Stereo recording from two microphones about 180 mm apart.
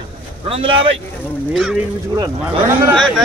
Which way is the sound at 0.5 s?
30° right (ahead or behind).